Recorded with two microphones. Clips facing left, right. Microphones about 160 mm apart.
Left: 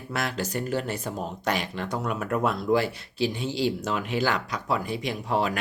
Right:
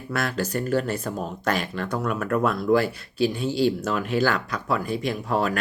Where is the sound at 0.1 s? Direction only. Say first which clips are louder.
Right 3 dB; 15° left (ahead or behind).